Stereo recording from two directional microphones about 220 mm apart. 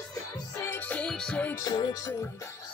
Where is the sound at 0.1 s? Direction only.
10° left (ahead or behind).